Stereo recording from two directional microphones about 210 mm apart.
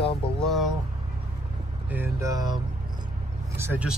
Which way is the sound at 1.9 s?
10° right (ahead or behind).